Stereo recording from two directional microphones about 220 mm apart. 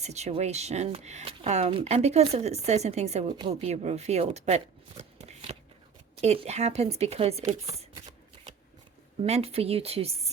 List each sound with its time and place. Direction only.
0.0 s speech: 30° right (ahead or behind)
9.2 s speech: 30° right (ahead or behind)